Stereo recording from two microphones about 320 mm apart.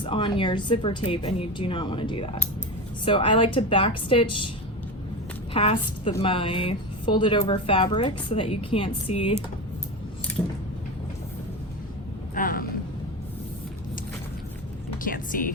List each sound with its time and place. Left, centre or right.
0.0 s a woman's voice: centre
5.5 s a woman's voice: centre
12.3 s a sound: left
15.0 s speech: left